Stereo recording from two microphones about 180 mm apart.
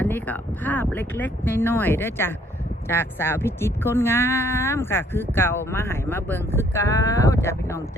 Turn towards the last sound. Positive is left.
turn(degrees=15)  # may be behind; listen again after turning